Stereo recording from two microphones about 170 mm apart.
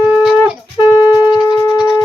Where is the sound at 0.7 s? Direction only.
20° left (ahead or behind).